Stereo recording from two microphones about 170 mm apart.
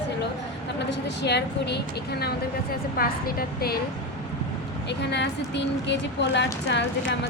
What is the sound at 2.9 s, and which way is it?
Speech, 60° left (ahead or behind).